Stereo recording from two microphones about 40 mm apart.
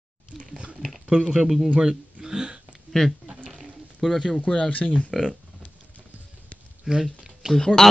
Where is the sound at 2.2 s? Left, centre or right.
Centre.